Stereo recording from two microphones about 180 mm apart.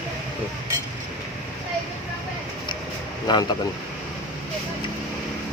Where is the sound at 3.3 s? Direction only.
25° left (ahead or behind).